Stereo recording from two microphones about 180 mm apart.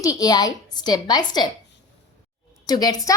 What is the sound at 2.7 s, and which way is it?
Speech, 20° left (ahead or behind).